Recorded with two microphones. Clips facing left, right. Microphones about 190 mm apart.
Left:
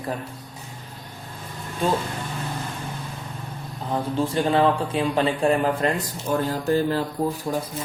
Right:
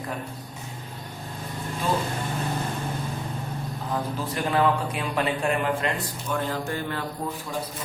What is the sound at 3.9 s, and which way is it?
Speech, 30° left (ahead or behind).